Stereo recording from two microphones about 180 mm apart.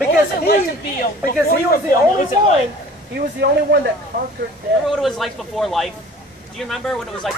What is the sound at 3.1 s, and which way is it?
Speech, 65° right (ahead or behind).